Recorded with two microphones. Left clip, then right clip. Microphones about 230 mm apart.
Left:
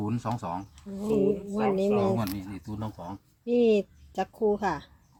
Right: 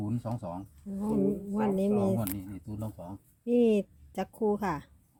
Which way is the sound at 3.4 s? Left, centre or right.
Right.